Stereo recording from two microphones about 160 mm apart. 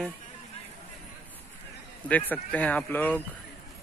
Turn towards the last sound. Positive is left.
turn(degrees=10)  # may be behind; listen again after turning